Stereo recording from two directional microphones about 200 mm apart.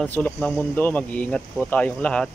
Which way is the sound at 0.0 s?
5° left (ahead or behind).